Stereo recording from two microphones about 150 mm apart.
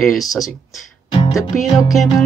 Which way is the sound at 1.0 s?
35° left (ahead or behind).